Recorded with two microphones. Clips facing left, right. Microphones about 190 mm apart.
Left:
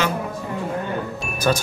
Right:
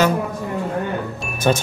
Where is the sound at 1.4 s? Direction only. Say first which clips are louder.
Right 2 dB; 25° right (ahead or behind).